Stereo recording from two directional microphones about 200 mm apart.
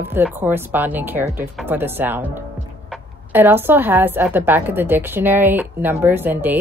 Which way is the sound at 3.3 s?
10° right (ahead or behind).